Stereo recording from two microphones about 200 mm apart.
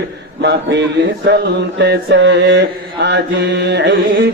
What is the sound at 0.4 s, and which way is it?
Mantra, 60° right (ahead or behind).